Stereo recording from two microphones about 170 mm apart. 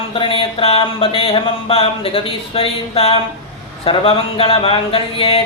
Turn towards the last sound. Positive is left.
turn(degrees=35)  # may be behind; listen again after turning